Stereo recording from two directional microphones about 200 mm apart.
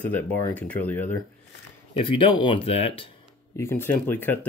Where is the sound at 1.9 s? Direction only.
25° left (ahead or behind).